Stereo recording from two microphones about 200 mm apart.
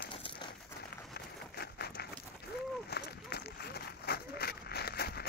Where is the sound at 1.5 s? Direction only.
50° left (ahead or behind).